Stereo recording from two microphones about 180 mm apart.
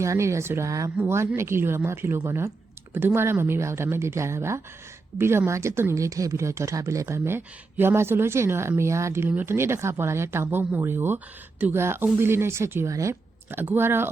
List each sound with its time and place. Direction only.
0.0 s speech: 15° right (ahead or behind)